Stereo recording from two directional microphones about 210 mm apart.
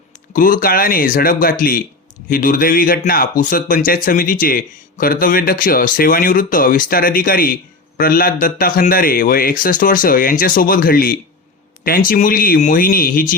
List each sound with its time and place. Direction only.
0.3 s speech: 40° left (ahead or behind)